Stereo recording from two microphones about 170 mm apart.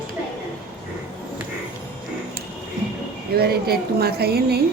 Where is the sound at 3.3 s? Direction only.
70° right (ahead or behind).